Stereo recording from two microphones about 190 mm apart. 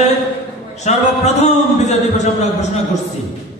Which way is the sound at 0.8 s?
35° left (ahead or behind).